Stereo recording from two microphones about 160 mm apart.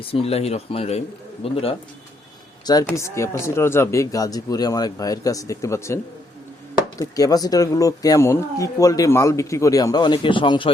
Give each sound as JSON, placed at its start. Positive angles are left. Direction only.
{"t": 0.0, "sound": "speech", "side_deg": 35}
{"t": 2.8, "sound": "speech", "side_deg": 15}
{"t": 7.0, "sound": "speech", "side_deg": 20}